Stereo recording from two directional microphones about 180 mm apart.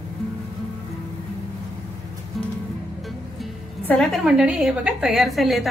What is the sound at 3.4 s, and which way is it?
A woman's voice, centre (ahead or behind).